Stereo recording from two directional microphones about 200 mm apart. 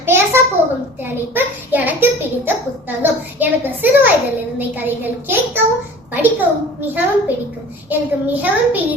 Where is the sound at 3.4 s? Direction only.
10° right (ahead or behind).